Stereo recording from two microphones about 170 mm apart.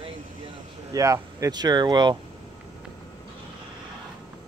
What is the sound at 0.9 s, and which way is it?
Speech, 20° right (ahead or behind).